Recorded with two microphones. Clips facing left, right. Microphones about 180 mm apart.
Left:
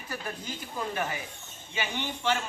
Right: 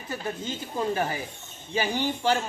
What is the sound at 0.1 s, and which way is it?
Speech, 25° right (ahead or behind).